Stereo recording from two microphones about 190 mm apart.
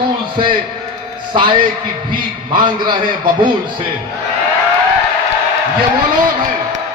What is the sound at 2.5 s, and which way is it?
Speech, 25° right (ahead or behind).